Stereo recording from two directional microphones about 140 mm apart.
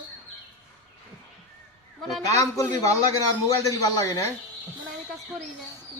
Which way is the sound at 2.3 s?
20° left (ahead or behind).